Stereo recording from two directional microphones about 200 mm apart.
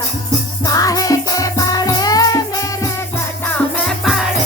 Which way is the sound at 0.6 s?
15° left (ahead or behind).